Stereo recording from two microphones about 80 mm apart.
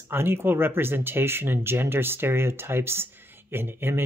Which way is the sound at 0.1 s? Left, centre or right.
Right.